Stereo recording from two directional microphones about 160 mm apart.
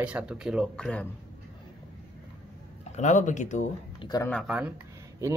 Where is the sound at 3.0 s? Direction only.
50° left (ahead or behind).